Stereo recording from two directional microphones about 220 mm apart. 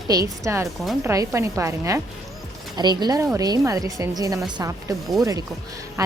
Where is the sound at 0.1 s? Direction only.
15° right (ahead or behind).